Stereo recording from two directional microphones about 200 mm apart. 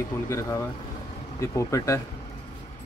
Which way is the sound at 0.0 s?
15° left (ahead or behind).